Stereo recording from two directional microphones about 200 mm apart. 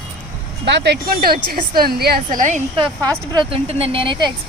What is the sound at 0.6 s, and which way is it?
A woman's voice, 60° right (ahead or behind).